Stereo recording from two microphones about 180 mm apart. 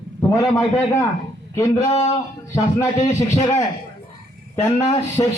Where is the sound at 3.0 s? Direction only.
20° left (ahead or behind).